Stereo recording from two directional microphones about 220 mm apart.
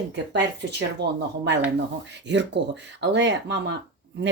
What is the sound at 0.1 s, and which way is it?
Speech, 50° right (ahead or behind).